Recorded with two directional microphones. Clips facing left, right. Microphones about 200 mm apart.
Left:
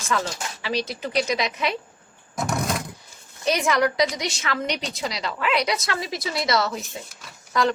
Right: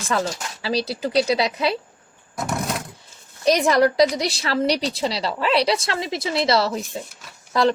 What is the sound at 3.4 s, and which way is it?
A woman's voice, 35° right (ahead or behind).